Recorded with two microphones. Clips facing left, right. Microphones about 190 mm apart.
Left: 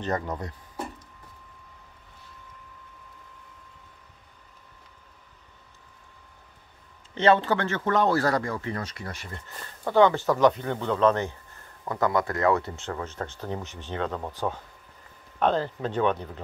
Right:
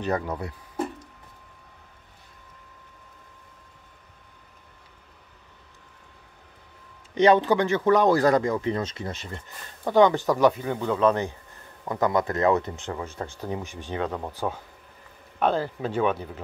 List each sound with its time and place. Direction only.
0.0 s speech: 10° right (ahead or behind)
7.2 s speech: 15° right (ahead or behind)